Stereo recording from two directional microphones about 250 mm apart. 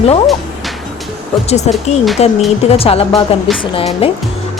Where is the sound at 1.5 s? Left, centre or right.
Left.